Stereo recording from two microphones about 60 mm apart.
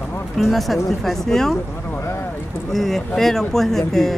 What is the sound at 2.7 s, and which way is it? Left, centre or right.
Speech, centre.